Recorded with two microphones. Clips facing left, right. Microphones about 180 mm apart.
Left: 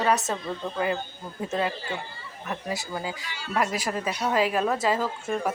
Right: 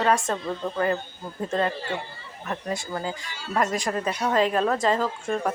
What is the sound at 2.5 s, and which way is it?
A woman's voice, 5° left (ahead or behind).